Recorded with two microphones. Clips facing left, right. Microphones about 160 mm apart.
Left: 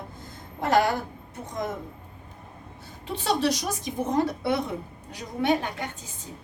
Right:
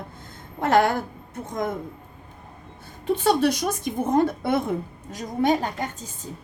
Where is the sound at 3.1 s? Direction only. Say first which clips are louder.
Right 5 dB; 55° right (ahead or behind).